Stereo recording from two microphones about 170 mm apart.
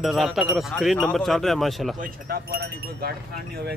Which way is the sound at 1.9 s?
60° right (ahead or behind).